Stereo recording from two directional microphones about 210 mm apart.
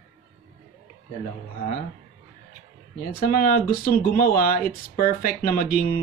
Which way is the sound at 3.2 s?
45° left (ahead or behind).